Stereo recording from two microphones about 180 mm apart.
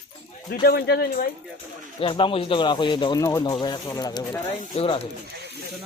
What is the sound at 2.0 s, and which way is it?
Speech, 30° left (ahead or behind).